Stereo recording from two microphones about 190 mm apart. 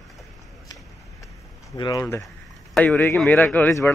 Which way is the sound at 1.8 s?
20° left (ahead or behind).